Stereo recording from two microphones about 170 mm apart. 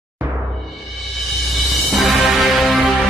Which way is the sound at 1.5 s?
Centre (ahead or behind).